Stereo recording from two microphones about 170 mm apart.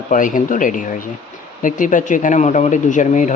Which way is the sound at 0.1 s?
50° left (ahead or behind).